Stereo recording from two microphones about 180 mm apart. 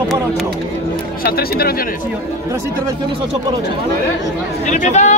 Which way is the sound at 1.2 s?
60° left (ahead or behind).